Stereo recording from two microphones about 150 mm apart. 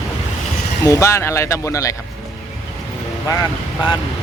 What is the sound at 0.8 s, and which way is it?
Speech, 20° left (ahead or behind).